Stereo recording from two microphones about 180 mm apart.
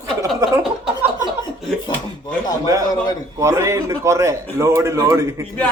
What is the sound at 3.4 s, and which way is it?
A man's voice, 15° right (ahead or behind).